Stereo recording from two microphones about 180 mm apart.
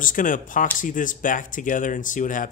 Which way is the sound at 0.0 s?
50° left (ahead or behind).